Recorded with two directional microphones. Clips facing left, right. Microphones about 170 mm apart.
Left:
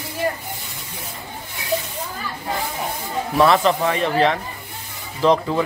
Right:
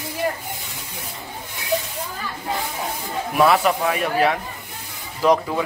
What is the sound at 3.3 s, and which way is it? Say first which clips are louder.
Speech: left 1 dB; 10° right (ahead or behind).